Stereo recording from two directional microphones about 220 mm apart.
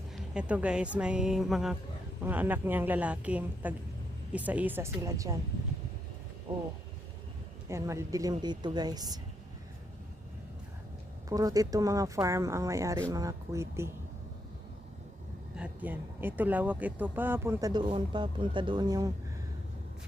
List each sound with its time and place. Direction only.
0.2 s speech: 5° right (ahead or behind)
7.7 s speech: 15° right (ahead or behind)
11.3 s speech: 15° right (ahead or behind)
15.5 s speech: 5° right (ahead or behind)